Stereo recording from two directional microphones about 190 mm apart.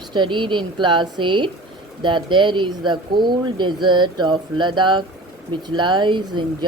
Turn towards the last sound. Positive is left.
turn(degrees=-25)  # may be behind; listen again after turning